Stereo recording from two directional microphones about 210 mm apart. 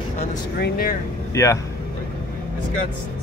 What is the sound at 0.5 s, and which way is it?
Speech, 45° left (ahead or behind).